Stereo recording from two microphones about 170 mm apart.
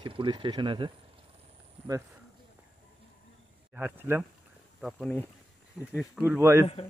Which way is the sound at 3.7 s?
10° right (ahead or behind).